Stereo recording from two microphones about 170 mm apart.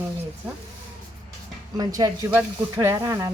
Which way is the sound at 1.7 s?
20° right (ahead or behind).